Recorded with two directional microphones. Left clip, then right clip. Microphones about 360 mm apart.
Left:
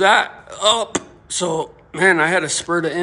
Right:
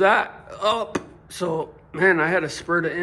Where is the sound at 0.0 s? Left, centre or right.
Centre.